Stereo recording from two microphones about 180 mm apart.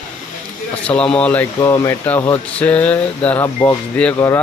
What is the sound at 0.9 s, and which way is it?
Speech, 5° left (ahead or behind).